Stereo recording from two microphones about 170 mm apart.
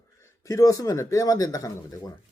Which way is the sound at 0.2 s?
20° left (ahead or behind).